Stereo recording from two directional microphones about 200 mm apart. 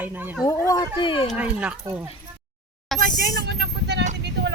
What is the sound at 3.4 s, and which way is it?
Vehicle, 55° right (ahead or behind).